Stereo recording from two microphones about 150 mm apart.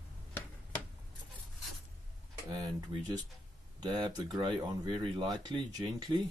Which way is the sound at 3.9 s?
30° right (ahead or behind).